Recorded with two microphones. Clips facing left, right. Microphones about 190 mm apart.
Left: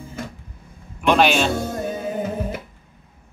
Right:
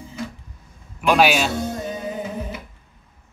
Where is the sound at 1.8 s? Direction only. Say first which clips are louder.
Left 3 dB; 55° left (ahead or behind).